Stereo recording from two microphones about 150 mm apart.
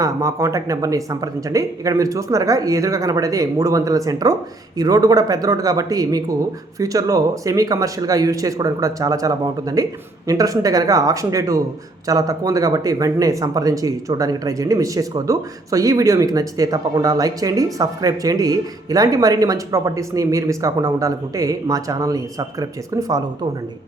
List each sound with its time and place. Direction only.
0.0 s speech: 20° right (ahead or behind)